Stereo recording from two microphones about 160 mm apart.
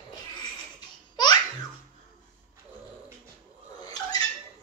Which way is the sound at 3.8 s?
25° left (ahead or behind).